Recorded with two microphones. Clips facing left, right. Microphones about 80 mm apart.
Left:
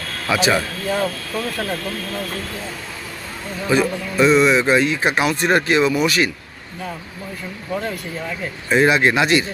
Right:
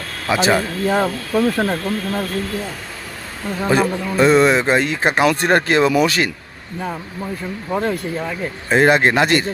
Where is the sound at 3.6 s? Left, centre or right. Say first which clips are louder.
Right 1 dB; right.